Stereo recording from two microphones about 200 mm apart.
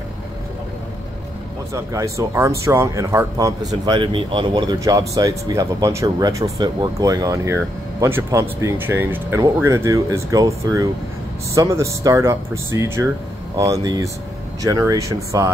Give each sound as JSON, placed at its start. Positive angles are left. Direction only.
{"t": 1.7, "sound": "speech", "side_deg": -15}